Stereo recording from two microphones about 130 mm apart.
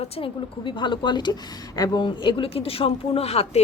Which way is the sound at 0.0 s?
40° left (ahead or behind).